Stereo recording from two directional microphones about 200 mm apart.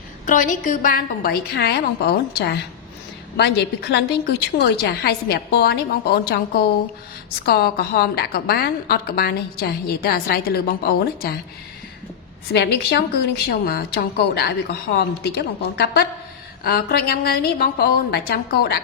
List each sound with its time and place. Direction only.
0.3 s a woman's voice: 40° left (ahead or behind)
7.4 s a woman's voice: 50° left (ahead or behind)
12.5 s a woman's voice: 55° left (ahead or behind)